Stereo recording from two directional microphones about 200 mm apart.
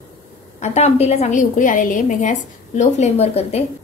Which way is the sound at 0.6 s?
35° left (ahead or behind).